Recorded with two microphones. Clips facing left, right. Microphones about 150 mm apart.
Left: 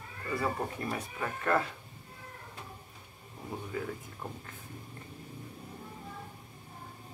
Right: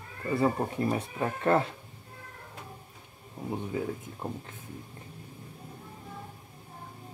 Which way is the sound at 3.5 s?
20° right (ahead or behind).